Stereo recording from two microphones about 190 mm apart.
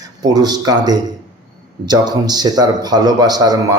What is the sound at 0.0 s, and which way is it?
A man's voice, 20° right (ahead or behind).